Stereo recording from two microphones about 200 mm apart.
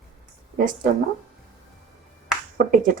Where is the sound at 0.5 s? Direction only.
40° right (ahead or behind).